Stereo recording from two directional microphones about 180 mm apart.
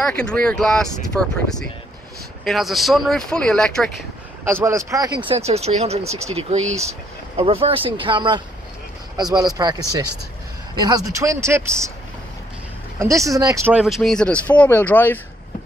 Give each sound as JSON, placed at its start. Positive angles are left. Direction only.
{"t": 0.0, "sound": "speech", "side_deg": 5}
{"t": 4.5, "sound": "speech", "side_deg": -15}
{"t": 13.0, "sound": "speech", "side_deg": -15}
{"t": 13.7, "sound": "speech", "side_deg": 0}